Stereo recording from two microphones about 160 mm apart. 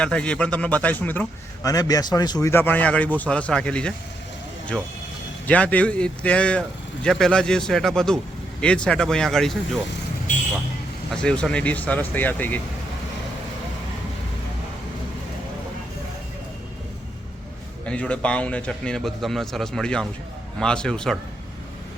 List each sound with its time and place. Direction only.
0.0 s speech: 5° left (ahead or behind)
1.6 s speech: 20° left (ahead or behind)
2.5 s speech: 15° left (ahead or behind)
5.5 s speech: 10° left (ahead or behind)
11.1 s speech: 5° left (ahead or behind)
17.8 s speech: 5° left (ahead or behind)